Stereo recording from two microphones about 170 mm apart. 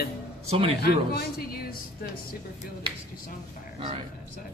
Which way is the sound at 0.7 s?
65° left (ahead or behind).